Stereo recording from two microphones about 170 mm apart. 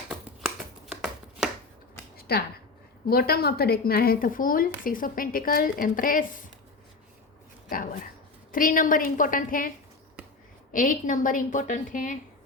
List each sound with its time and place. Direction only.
0.9 s chopping: 5° right (ahead or behind)
2.1 s a sound: 70° left (ahead or behind)
3.1 s a woman's voice: 65° left (ahead or behind)
7.7 s dog: 55° left (ahead or behind)
8.5 s a woman's voice: 55° left (ahead or behind)